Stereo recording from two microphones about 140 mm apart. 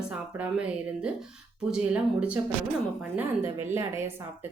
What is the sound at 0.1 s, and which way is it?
A woman's voice, 10° right (ahead or behind).